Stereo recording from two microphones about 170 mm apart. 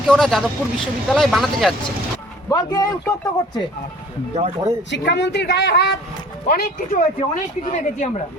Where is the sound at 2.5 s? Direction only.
20° left (ahead or behind).